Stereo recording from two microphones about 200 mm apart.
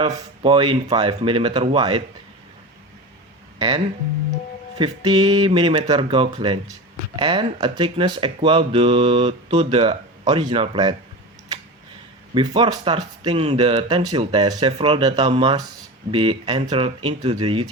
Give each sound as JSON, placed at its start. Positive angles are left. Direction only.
{"t": 0.1, "sound": "speech", "side_deg": -20}
{"t": 4.8, "sound": "speech", "side_deg": -25}
{"t": 12.3, "sound": "speech", "side_deg": -25}
{"t": 14.2, "sound": "speech", "side_deg": -30}